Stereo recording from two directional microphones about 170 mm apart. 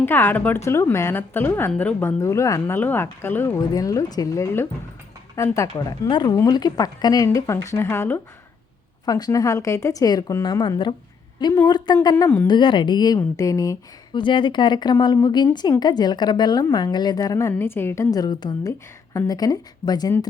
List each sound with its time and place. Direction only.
0.0 s a woman's voice: 10° left (ahead or behind)
12.5 s speech: 30° left (ahead or behind)